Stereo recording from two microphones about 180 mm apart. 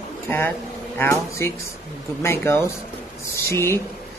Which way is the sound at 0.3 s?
10° left (ahead or behind).